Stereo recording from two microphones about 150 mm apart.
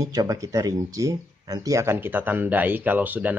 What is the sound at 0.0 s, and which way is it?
Speech, 25° right (ahead or behind).